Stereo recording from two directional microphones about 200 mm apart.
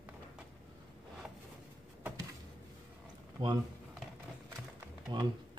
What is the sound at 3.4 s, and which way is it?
Speech, 20° right (ahead or behind).